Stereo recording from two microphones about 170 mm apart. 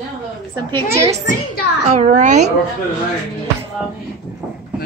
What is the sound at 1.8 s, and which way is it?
Speech, 40° right (ahead or behind).